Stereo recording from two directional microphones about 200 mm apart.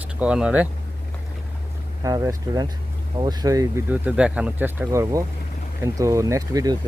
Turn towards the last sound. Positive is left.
turn(degrees=-15)  # may be behind; listen again after turning